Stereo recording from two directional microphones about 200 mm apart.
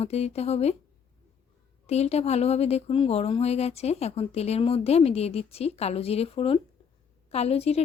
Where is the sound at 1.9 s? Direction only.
30° left (ahead or behind).